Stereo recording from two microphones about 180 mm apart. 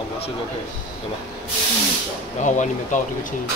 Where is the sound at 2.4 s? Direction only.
45° left (ahead or behind).